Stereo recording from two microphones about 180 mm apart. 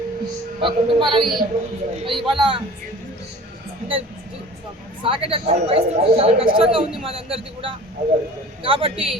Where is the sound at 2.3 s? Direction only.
30° right (ahead or behind).